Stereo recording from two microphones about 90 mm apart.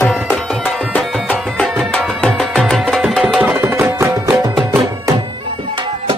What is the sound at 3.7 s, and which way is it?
Music, 30° right (ahead or behind).